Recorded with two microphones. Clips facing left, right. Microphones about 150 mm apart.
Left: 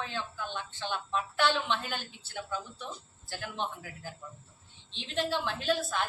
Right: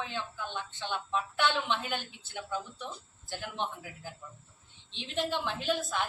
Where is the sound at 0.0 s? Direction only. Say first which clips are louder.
Even; 15° right (ahead or behind).